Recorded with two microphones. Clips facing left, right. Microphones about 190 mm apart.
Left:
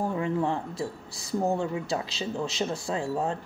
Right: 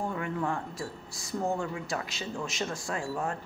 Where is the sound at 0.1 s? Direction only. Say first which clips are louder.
Left 5 dB; 25° left (ahead or behind).